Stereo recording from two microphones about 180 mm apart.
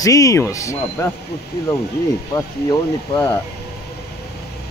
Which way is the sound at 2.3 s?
20° left (ahead or behind).